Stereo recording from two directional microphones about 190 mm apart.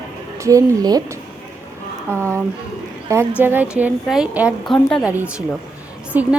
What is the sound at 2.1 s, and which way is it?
Speech, 15° right (ahead or behind).